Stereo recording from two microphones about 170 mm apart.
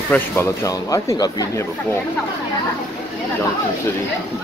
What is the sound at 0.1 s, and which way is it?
Speech, 15° left (ahead or behind).